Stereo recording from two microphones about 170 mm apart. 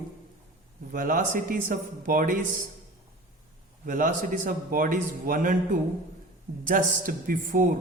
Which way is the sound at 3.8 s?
50° right (ahead or behind).